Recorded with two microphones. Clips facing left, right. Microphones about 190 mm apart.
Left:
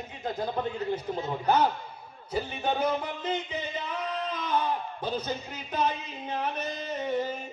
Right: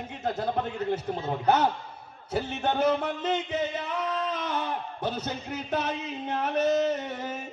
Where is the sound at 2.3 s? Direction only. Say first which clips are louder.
Right 2 dB; 75° right (ahead or behind).